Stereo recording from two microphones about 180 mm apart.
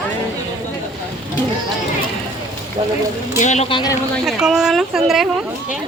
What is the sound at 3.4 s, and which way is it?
Speech, 40° left (ahead or behind).